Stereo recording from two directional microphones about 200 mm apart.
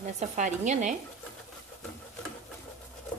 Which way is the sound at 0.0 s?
35° right (ahead or behind).